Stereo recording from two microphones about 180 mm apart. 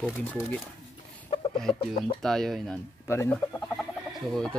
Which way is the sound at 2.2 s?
Centre (ahead or behind).